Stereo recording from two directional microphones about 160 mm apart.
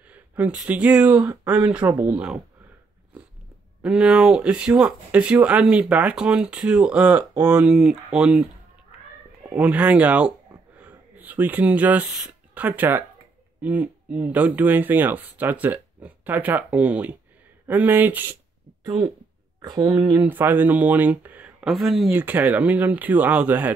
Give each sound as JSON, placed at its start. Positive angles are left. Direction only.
{"t": 0.1, "sound": "speech", "side_deg": -10}
{"t": 3.8, "sound": "speech", "side_deg": -5}
{"t": 9.6, "sound": "speech", "side_deg": -10}
{"t": 19.6, "sound": "speech", "side_deg": -25}